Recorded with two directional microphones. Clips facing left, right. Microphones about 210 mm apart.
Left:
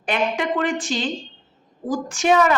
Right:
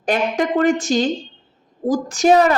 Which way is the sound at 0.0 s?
40° right (ahead or behind).